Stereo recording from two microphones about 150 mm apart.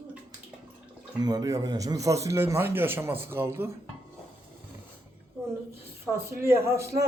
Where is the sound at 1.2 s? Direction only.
25° right (ahead or behind).